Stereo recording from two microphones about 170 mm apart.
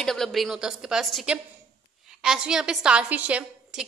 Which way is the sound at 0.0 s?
5° left (ahead or behind).